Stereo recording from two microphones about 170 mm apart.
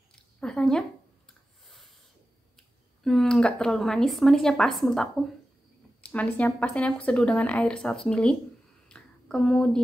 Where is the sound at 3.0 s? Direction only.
5° left (ahead or behind).